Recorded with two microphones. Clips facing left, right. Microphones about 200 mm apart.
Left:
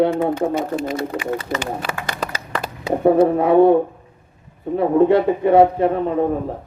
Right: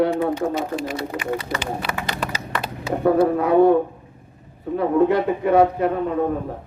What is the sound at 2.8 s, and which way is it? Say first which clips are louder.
Speech: left 3 dB; 25° left (ahead or behind).